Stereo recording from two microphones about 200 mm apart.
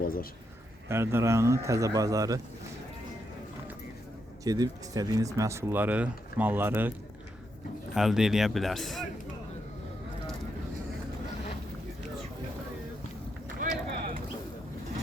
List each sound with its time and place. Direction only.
0.0 s a man's voice: 45° left (ahead or behind)
0.9 s speech: 10° right (ahead or behind)
4.4 s speech: 20° right (ahead or behind)
7.9 s speech: centre (ahead or behind)
13.6 s clip-clop: 45° right (ahead or behind)